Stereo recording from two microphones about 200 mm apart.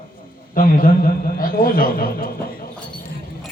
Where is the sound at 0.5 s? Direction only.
45° left (ahead or behind).